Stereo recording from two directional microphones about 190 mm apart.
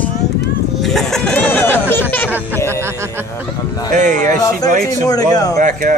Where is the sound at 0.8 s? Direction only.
Centre (ahead or behind).